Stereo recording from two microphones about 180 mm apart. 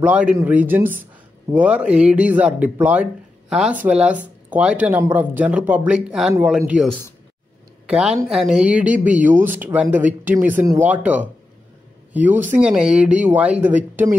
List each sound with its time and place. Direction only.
0.0 s speech: 5° right (ahead or behind)
7.9 s speech: 5° right (ahead or behind)